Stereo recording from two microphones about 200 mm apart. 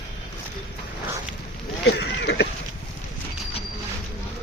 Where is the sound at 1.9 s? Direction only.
60° left (ahead or behind).